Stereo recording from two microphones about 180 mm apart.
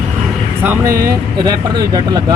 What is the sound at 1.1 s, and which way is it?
Speech, 20° right (ahead or behind).